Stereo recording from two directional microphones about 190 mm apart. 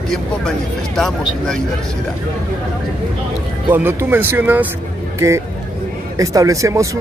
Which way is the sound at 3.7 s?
10° right (ahead or behind).